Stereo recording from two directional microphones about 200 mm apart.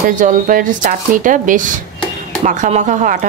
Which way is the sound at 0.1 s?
40° right (ahead or behind).